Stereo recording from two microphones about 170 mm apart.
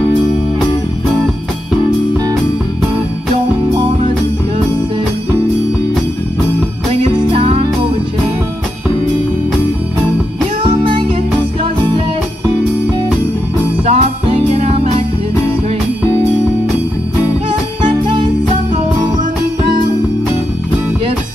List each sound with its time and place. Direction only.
6.9 s music: 35° right (ahead or behind)
10.6 s music: 30° right (ahead or behind)
13.8 s music: 40° right (ahead or behind)
17.8 s music: 25° right (ahead or behind)